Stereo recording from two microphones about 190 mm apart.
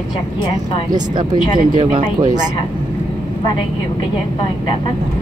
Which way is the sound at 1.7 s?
25° right (ahead or behind).